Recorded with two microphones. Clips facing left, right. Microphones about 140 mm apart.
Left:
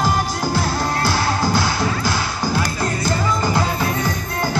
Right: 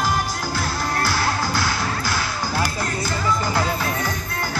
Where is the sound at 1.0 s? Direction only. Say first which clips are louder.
Left 4 dB; 20° left (ahead or behind).